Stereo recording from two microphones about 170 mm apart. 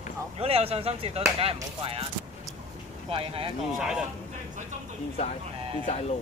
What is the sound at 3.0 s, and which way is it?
Speech, 35° right (ahead or behind).